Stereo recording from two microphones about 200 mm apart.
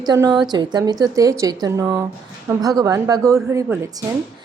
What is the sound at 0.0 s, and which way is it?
A woman's voice, 20° right (ahead or behind).